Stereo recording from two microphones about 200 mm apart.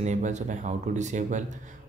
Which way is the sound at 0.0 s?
35° right (ahead or behind).